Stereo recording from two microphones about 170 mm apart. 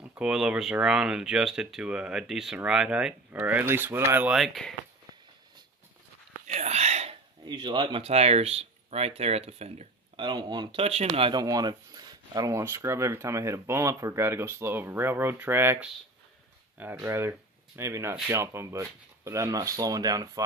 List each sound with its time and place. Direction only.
0.0 s speech: 5° right (ahead or behind)
3.3 s rub: 10° right (ahead or behind)
4.4 s speech: centre (ahead or behind)
6.4 s whispering: 40° right (ahead or behind)
7.4 s speech: 25° right (ahead or behind)